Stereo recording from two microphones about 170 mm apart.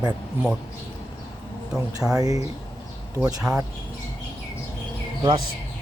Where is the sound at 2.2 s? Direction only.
20° right (ahead or behind).